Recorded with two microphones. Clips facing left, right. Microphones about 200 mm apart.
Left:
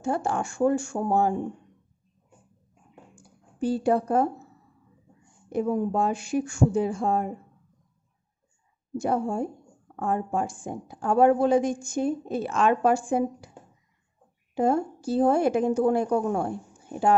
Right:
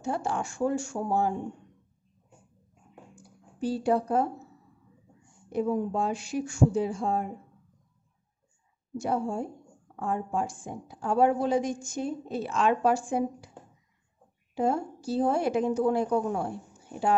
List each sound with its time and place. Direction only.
0.0 s a woman's voice: 50° left (ahead or behind)
3.2 s a sound: 50° left (ahead or behind)
5.5 s a woman's voice: 50° left (ahead or behind)
8.9 s a woman's voice: 50° left (ahead or behind)
14.5 s a woman's voice: 50° left (ahead or behind)